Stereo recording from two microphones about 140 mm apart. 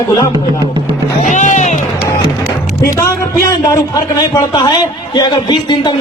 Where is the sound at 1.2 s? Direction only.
60° left (ahead or behind).